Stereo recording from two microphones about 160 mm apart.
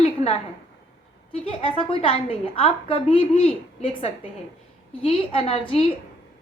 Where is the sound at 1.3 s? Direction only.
35° left (ahead or behind).